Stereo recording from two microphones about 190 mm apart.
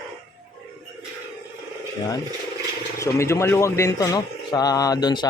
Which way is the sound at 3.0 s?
15° left (ahead or behind).